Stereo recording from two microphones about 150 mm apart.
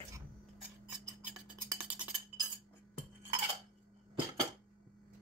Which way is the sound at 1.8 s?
10° right (ahead or behind).